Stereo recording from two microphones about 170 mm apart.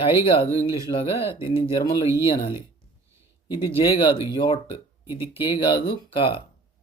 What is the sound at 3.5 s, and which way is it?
Speech, 30° left (ahead or behind).